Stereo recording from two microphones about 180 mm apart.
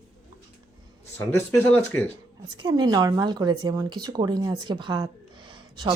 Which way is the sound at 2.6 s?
20° right (ahead or behind).